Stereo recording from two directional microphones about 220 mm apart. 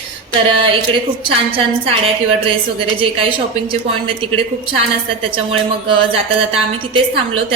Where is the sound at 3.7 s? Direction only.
25° right (ahead or behind).